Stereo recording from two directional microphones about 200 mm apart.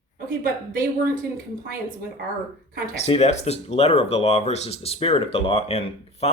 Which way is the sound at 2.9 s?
30° left (ahead or behind).